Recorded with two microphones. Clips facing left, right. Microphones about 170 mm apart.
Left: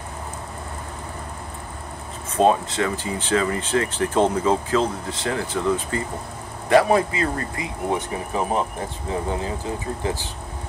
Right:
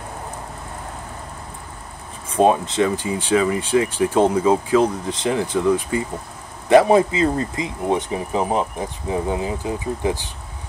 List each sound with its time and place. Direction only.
2.3 s speech: 15° right (ahead or behind)